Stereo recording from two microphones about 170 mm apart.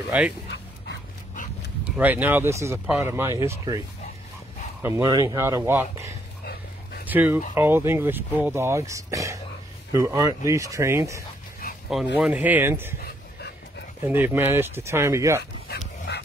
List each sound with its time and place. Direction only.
0.1 s speech: 10° right (ahead or behind)
2.0 s speech: 10° right (ahead or behind)
4.8 s speech: 15° right (ahead or behind)
6.4 s a sound: 65° left (ahead or behind)
7.1 s speech: 10° right (ahead or behind)
11.6 s a sound: 60° left (ahead or behind)
12.2 s speech: 10° right (ahead or behind)
14.0 s speech: 10° right (ahead or behind)
16.1 s dog: 75° left (ahead or behind)